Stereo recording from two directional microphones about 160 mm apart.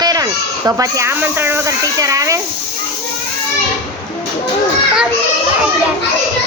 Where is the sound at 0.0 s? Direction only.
25° right (ahead or behind).